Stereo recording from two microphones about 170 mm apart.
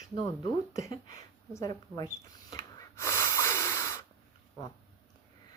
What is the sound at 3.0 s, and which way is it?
Snort, 15° left (ahead or behind).